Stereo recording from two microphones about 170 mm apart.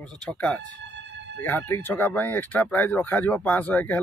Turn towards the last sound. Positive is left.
turn(degrees=10)  # may be behind; listen again after turning